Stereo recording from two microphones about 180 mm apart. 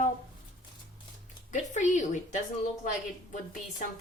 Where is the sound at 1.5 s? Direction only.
45° left (ahead or behind).